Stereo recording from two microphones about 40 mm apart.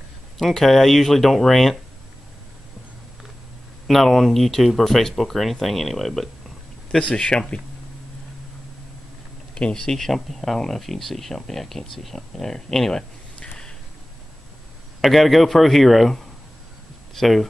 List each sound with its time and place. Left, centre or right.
0.4 s speech: centre
3.8 s speech: centre
7.0 s speech: left
9.6 s speech: centre
15.0 s speech: centre